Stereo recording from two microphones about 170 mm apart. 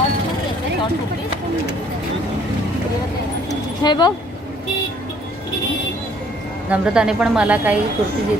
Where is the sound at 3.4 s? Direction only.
25° left (ahead or behind).